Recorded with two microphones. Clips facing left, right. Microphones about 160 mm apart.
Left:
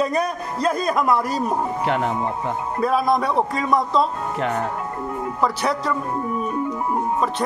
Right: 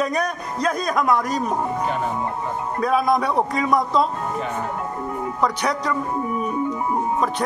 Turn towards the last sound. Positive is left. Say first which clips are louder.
# even
turn(degrees=0)  # may be behind; listen again after turning